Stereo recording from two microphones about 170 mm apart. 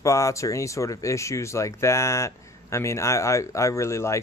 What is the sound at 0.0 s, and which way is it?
Speech, 20° left (ahead or behind).